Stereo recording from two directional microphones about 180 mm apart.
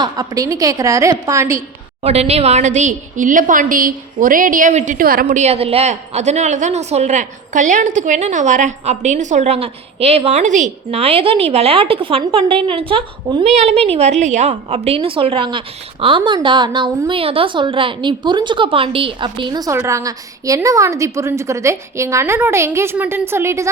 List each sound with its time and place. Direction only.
0.0 s a woman's voice: 20° right (ahead or behind)
2.0 s a woman's voice: 35° right (ahead or behind); by 23.6 s 15° right (ahead or behind)